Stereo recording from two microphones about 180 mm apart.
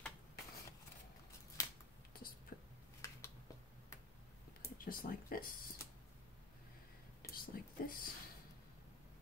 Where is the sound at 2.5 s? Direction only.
55° left (ahead or behind).